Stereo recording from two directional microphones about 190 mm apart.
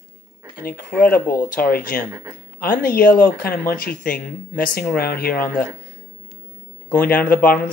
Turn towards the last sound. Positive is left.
turn(degrees=50)  # may be behind; listen again after turning